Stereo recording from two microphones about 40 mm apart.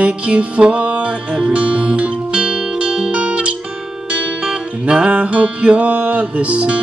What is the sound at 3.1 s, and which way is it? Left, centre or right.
Music, right.